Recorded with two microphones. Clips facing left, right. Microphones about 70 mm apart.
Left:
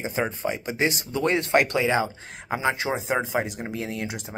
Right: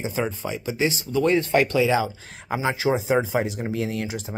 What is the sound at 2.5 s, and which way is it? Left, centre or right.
Speech, left.